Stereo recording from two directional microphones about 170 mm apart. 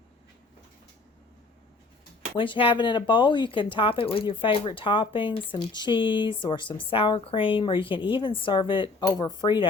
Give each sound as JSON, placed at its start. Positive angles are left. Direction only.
{"t": 2.4, "sound": "speech", "side_deg": 30}